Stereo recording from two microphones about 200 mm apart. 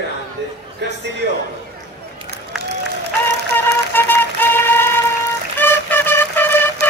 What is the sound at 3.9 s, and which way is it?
Music, 10° left (ahead or behind).